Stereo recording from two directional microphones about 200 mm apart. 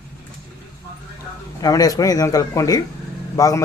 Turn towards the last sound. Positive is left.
turn(degrees=15)  # may be behind; listen again after turning